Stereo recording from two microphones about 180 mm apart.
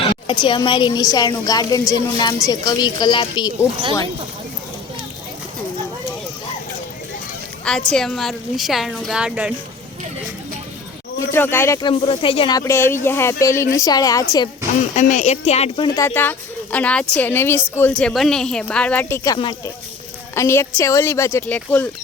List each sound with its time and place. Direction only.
0.3 s speech: 25° left (ahead or behind)
7.6 s a woman's voice: 5° left (ahead or behind)
11.3 s speech: 15° left (ahead or behind)
11.9 s speech: 30° left (ahead or behind)
14.9 s speech: 40° left (ahead or behind)
16.0 s speech: 10° left (ahead or behind)